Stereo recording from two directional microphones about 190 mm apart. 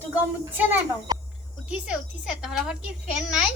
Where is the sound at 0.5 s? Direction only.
10° right (ahead or behind).